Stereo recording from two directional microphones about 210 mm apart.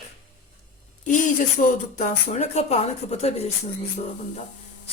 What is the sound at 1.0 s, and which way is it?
Speech, 35° left (ahead or behind).